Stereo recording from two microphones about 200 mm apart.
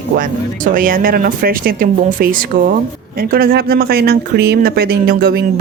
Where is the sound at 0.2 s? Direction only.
45° right (ahead or behind).